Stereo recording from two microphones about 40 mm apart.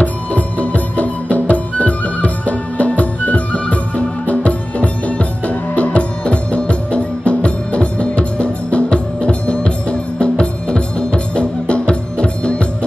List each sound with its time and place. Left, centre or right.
0.0 s music: left